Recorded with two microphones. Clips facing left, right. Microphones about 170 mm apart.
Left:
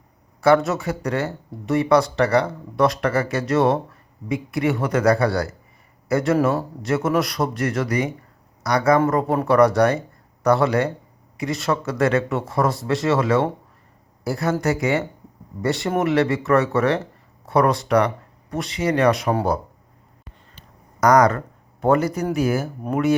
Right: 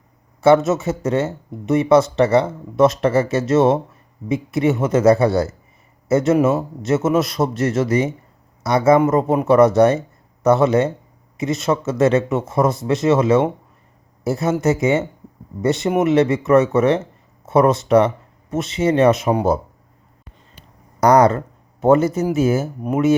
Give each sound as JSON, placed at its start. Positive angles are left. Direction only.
{"t": 0.4, "sound": "speech", "side_deg": -20}
{"t": 21.0, "sound": "speech", "side_deg": -30}